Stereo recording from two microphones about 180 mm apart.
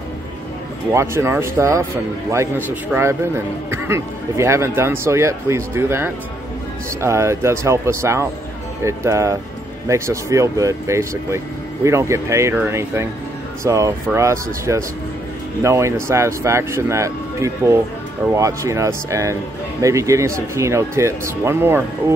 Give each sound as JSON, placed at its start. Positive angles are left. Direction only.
{"t": 0.9, "sound": "a man's voice", "side_deg": -15}